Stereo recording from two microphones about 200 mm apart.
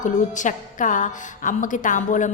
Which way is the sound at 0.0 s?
40° left (ahead or behind).